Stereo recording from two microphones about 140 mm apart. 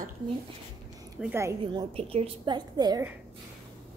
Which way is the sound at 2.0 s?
45° right (ahead or behind).